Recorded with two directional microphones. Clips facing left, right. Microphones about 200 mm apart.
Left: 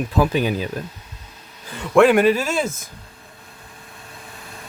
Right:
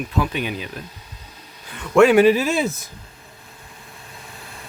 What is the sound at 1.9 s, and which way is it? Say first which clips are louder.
Speech: right 1 dB; centre (ahead or behind).